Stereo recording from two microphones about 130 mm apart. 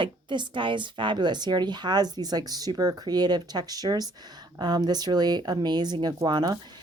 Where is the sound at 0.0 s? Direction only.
40° right (ahead or behind).